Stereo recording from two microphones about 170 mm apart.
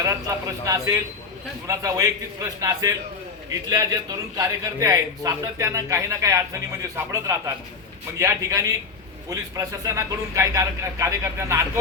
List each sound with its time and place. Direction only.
0.0 s a man's voice: 20° right (ahead or behind)